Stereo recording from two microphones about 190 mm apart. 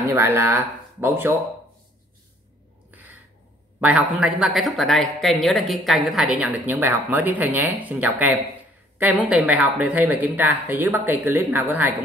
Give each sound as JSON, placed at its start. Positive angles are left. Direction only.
{"t": 0.0, "sound": "speech", "side_deg": -15}
{"t": 2.9, "sound": "a sound", "side_deg": -10}
{"t": 3.8, "sound": "speech", "side_deg": -5}